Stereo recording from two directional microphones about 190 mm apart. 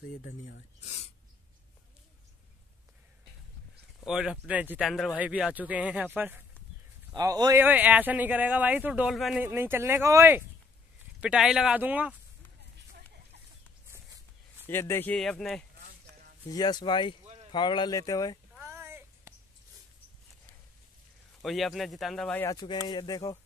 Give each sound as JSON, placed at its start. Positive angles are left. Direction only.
{"t": 0.2, "sound": "speech", "side_deg": 50}
{"t": 0.8, "sound": "speech", "side_deg": 35}
{"t": 4.0, "sound": "speech", "side_deg": -5}
{"t": 14.7, "sound": "speech", "side_deg": 10}
{"t": 16.4, "sound": "speech", "side_deg": 20}
{"t": 18.6, "sound": "a sound", "side_deg": -15}
{"t": 21.4, "sound": "speech", "side_deg": 0}